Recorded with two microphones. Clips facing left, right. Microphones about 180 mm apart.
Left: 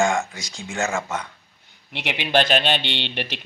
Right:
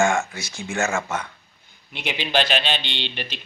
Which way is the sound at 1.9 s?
65° left (ahead or behind).